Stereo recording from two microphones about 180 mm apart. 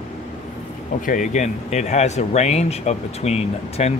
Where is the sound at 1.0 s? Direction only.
45° left (ahead or behind).